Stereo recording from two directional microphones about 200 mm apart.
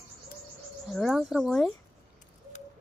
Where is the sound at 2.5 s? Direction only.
35° left (ahead or behind).